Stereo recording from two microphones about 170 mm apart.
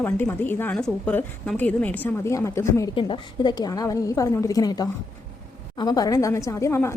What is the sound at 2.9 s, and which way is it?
A woman's voice, 30° left (ahead or behind).